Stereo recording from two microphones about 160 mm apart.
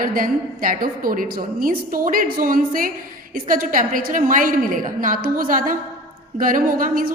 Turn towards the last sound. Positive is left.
turn(degrees=-60)  # may be behind; listen again after turning